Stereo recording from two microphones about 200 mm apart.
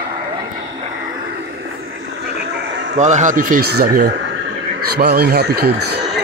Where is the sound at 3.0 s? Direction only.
35° right (ahead or behind).